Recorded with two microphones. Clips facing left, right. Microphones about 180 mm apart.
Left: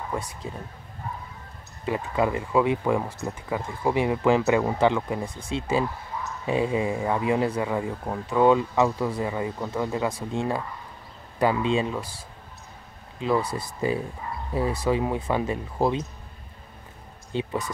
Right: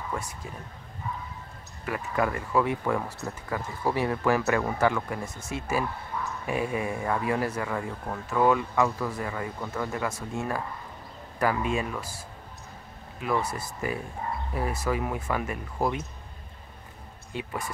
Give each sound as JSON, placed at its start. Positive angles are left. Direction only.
{"t": 1.9, "sound": "speech", "side_deg": 20}
{"t": 10.1, "sound": "speech", "side_deg": 30}
{"t": 13.2, "sound": "speech", "side_deg": 30}
{"t": 17.3, "sound": "speech", "side_deg": 25}